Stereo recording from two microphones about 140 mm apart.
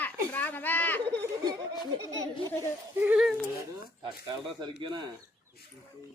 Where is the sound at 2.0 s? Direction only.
25° right (ahead or behind).